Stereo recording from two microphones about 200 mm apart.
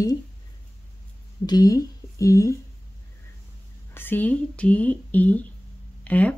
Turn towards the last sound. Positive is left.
turn(degrees=5)  # may be behind; listen again after turning